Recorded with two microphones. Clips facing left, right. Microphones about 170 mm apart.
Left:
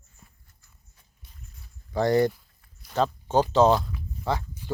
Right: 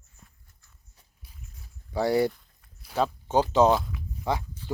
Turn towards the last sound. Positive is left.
turn(degrees=15)  # may be behind; listen again after turning